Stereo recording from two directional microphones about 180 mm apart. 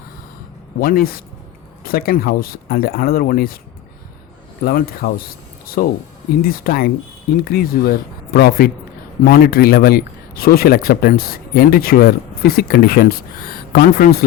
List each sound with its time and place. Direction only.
0.8 s speech: 55° left (ahead or behind)
4.6 s speech: 55° left (ahead or behind)